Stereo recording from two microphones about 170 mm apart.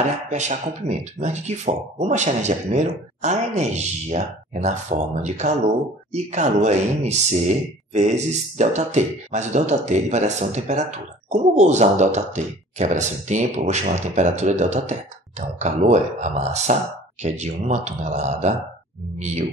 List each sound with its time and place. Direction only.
0.3 s speech: 45° right (ahead or behind)